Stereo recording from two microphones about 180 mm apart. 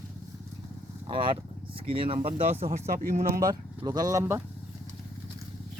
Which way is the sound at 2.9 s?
50° right (ahead or behind).